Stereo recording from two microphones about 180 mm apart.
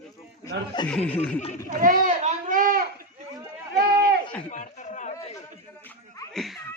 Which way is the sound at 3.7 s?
60° right (ahead or behind).